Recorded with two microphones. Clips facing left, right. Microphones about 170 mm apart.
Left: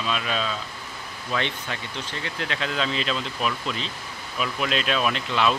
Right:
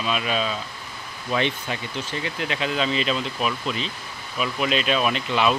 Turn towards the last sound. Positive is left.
turn(degrees=-5)  # may be behind; listen again after turning